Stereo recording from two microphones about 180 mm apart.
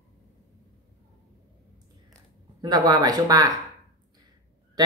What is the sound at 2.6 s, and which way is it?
Speech, 20° right (ahead or behind).